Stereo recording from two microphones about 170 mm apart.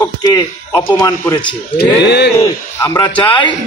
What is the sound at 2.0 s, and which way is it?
Speech, 80° left.